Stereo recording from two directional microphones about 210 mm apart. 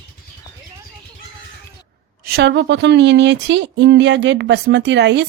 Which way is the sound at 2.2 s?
50° right (ahead or behind).